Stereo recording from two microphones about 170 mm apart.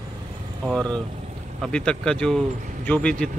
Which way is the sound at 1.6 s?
5° left (ahead or behind).